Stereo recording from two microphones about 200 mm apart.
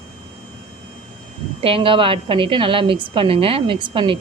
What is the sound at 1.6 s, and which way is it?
A woman's voice, 25° right (ahead or behind).